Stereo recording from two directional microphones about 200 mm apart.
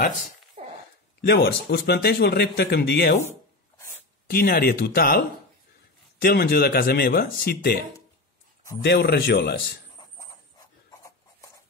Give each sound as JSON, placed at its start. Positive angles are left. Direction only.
{"t": 0.6, "sound": "a sound", "side_deg": -40}
{"t": 1.2, "sound": "speech", "side_deg": 55}
{"t": 4.3, "sound": "speech", "side_deg": 45}
{"t": 6.2, "sound": "speech", "side_deg": 50}
{"t": 8.8, "sound": "speech", "side_deg": 55}